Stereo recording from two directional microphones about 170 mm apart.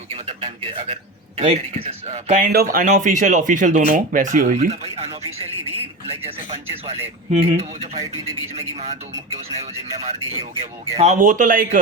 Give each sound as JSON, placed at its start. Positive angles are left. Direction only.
{"t": 0.1, "sound": "speech", "side_deg": -40}
{"t": 2.5, "sound": "speech", "side_deg": -60}
{"t": 8.5, "sound": "speech", "side_deg": -40}